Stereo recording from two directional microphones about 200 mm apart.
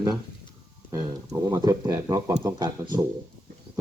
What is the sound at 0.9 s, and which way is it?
Speech, 15° right (ahead or behind).